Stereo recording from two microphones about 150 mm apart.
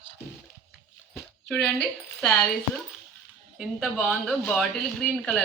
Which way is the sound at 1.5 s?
5° left (ahead or behind).